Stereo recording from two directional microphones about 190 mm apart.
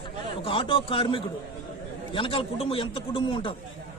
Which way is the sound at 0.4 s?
25° left (ahead or behind).